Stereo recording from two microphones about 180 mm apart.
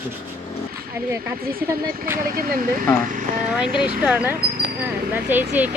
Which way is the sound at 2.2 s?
55° right (ahead or behind).